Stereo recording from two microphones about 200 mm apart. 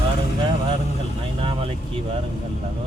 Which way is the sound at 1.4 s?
30° right (ahead or behind).